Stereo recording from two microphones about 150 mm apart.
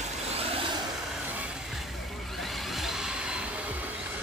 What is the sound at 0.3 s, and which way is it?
Vehicle, 40° right (ahead or behind).